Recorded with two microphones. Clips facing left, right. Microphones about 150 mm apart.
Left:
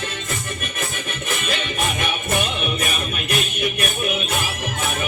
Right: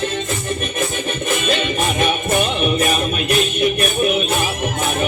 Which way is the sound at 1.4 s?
25° right (ahead or behind).